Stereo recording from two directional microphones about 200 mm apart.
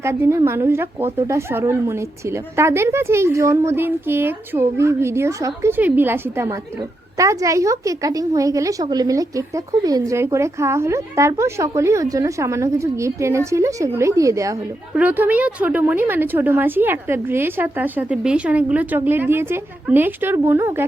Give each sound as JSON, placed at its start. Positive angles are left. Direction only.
{"t": 0.0, "sound": "a woman's voice", "side_deg": -15}